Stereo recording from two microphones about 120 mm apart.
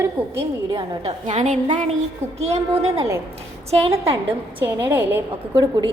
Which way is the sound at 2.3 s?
60° right (ahead or behind).